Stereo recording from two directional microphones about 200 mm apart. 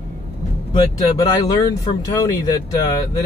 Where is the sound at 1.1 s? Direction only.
15° left (ahead or behind).